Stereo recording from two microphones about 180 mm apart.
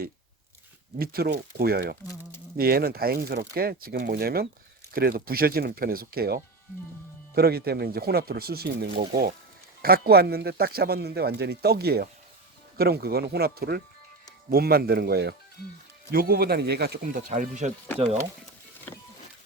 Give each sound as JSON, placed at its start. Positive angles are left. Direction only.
{"t": 0.9, "sound": "speech", "side_deg": -60}